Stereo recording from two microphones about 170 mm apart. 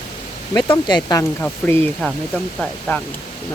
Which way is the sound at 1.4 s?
10° left (ahead or behind).